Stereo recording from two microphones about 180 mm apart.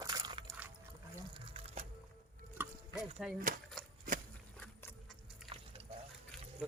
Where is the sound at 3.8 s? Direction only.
Centre (ahead or behind).